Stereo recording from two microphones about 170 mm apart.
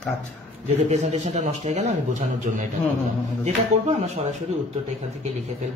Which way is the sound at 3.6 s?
40° right (ahead or behind).